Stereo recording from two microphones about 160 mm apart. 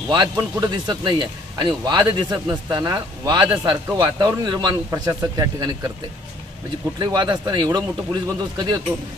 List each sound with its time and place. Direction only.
0.4 s speech: 25° right (ahead or behind)
7.0 s speech: 25° right (ahead or behind)